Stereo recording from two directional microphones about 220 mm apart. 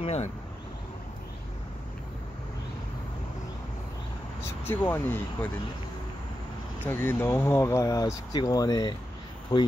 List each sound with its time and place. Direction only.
0.0 s speech: 30° left (ahead or behind)
4.6 s speech: 10° left (ahead or behind)
6.9 s speech: 10° left (ahead or behind)